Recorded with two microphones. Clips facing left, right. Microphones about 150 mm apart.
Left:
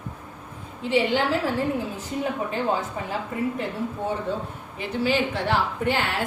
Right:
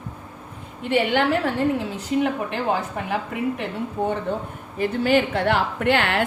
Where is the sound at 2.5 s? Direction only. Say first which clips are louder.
Right 1 dB; 70° right (ahead or behind).